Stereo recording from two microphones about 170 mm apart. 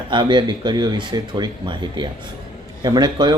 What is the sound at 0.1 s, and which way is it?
Speech, 30° right (ahead or behind).